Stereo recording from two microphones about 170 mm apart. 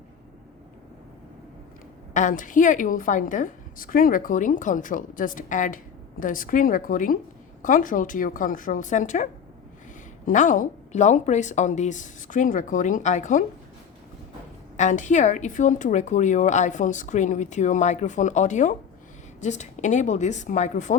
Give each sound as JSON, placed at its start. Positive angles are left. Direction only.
{"t": 2.1, "sound": "a woman's voice", "side_deg": 50}
{"t": 14.8, "sound": "a woman's voice", "side_deg": 45}